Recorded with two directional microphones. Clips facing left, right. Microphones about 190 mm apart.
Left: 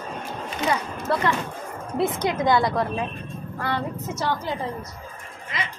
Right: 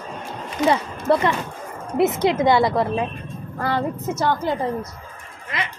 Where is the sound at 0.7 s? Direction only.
25° right (ahead or behind).